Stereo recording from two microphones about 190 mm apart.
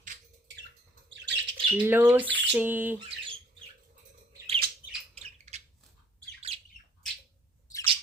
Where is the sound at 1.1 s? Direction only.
65° right (ahead or behind).